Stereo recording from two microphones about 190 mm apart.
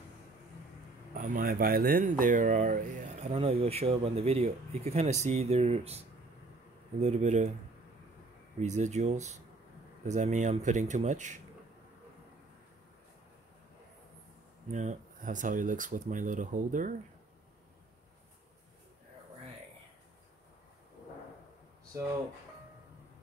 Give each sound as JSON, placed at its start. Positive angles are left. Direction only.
{"t": 1.1, "sound": "speech", "side_deg": -45}
{"t": 8.5, "sound": "speech", "side_deg": -40}
{"t": 14.7, "sound": "speech", "side_deg": -40}